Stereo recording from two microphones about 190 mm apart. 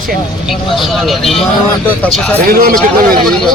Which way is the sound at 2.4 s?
50° right (ahead or behind).